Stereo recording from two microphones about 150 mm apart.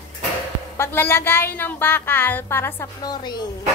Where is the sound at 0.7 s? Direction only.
15° left (ahead or behind).